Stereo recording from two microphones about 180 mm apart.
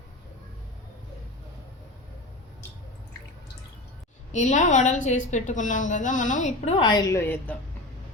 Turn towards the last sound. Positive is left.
turn(degrees=10)  # may be behind; listen again after turning